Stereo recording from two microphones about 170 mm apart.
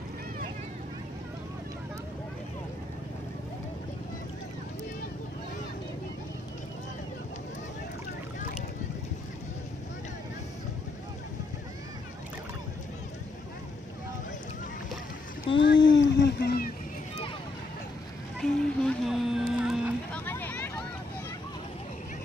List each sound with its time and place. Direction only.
15.5 s a sound: 90° left; by 16.7 s 65° left (ahead or behind)
18.4 s vehicle: centre (ahead or behind)
20.2 s hubbub: 10° left (ahead or behind)